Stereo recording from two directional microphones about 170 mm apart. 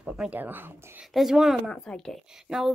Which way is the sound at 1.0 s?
Centre (ahead or behind).